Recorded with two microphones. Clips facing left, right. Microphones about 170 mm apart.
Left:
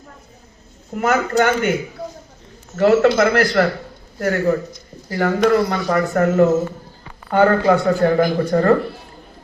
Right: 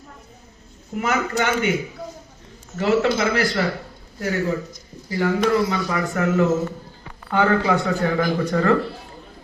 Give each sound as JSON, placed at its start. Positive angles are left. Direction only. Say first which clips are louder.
{"t": 0.9, "sound": "speech", "louder": "left 5 dB", "side_deg": 50}
{"t": 2.7, "sound": "a man's voice", "louder": "left 6 dB", "side_deg": 55}